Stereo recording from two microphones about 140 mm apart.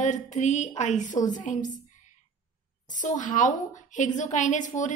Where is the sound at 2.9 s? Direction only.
65° left (ahead or behind).